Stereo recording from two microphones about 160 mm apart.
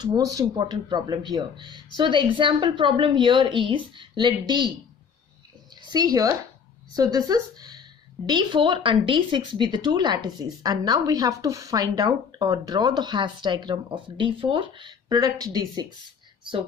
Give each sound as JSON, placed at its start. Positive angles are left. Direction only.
{"t": 0.0, "sound": "a woman's voice", "side_deg": -25}
{"t": 5.9, "sound": "speech", "side_deg": -25}